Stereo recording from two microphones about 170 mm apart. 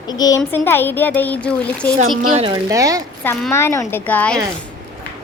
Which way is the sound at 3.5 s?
15° left (ahead or behind).